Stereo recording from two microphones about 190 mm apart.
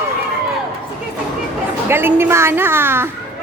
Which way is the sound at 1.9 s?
10° right (ahead or behind).